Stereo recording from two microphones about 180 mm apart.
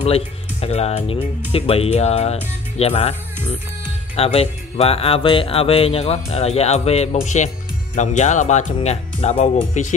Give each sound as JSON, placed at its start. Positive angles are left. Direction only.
{"t": 0.0, "sound": "speech", "side_deg": 35}
{"t": 4.2, "sound": "speech", "side_deg": 35}